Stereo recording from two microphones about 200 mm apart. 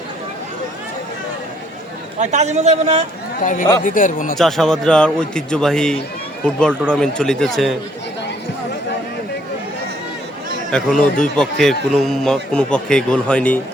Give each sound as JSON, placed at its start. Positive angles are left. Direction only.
{"t": 2.1, "sound": "a man's voice", "side_deg": -35}
{"t": 3.8, "sound": "speech", "side_deg": 40}
{"t": 4.4, "sound": "a man's voice", "side_deg": 0}
{"t": 10.7, "sound": "a man's voice", "side_deg": 5}